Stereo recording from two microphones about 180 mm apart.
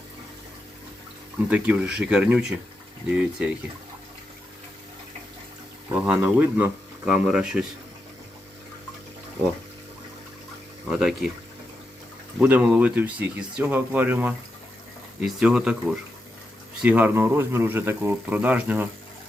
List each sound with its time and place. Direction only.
1.5 s speech: 10° right (ahead or behind)
5.9 s speech: 10° right (ahead or behind)
12.4 s speech: 10° right (ahead or behind)